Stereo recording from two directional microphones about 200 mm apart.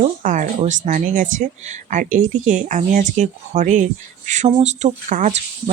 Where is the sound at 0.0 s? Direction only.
40° right (ahead or behind).